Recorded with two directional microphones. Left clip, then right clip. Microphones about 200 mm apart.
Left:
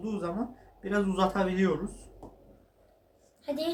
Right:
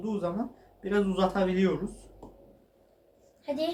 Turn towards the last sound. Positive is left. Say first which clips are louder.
# right 2 dB
turn(degrees=25)  # may be behind; listen again after turning